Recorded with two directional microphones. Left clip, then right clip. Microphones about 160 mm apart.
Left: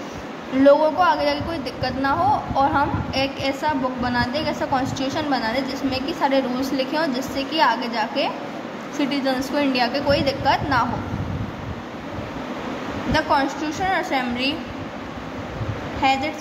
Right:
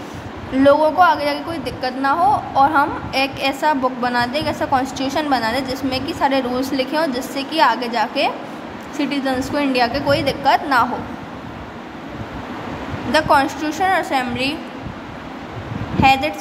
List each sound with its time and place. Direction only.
0.6 s a woman's voice: 25° right (ahead or behind)
13.1 s a woman's voice: 35° right (ahead or behind)
16.0 s a woman's voice: 30° right (ahead or behind)